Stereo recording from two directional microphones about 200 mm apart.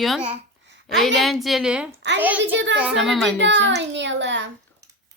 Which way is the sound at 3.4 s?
65° right (ahead or behind).